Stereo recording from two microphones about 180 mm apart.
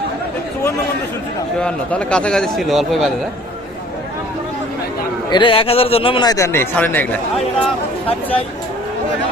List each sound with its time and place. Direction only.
1.6 s a man's voice: 5° left (ahead or behind)
5.3 s a man's voice: 30° left (ahead or behind); by 7.4 s 10° left (ahead or behind)